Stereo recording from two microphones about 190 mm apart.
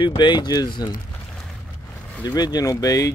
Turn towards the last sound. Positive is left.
turn(degrees=20)  # may be behind; listen again after turning